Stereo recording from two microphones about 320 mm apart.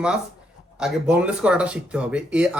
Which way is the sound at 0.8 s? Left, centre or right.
Centre.